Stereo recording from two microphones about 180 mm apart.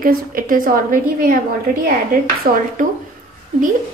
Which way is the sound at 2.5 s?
50° right (ahead or behind).